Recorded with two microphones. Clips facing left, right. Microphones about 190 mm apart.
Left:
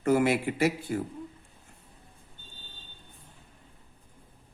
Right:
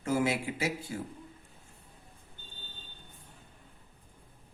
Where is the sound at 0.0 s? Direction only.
60° left (ahead or behind).